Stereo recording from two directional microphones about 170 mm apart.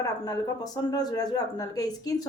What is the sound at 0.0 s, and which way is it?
Speech, 25° left (ahead or behind).